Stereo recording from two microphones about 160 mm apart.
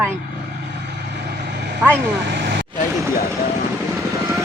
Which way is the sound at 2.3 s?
90° right.